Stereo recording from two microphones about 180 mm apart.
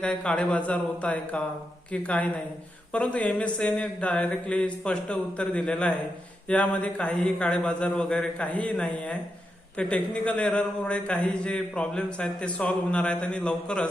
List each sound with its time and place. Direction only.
0.0 s a man's voice: 5° left (ahead or behind)